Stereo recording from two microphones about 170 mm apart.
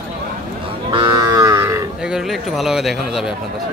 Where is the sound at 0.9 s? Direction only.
20° right (ahead or behind).